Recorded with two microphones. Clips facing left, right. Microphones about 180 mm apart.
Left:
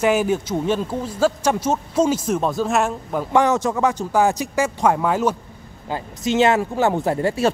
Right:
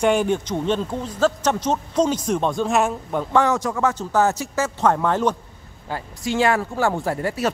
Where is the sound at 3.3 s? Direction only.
20° left (ahead or behind).